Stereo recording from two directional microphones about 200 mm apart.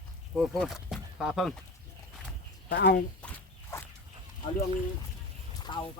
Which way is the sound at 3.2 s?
10° left (ahead or behind).